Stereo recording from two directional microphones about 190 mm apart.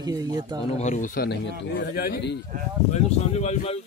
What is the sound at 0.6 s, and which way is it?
A man's voice, 35° left (ahead or behind).